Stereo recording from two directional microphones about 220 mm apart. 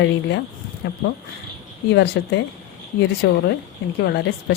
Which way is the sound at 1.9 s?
50° left (ahead or behind).